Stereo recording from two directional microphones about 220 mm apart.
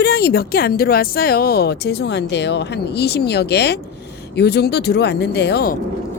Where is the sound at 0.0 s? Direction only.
45° left (ahead or behind).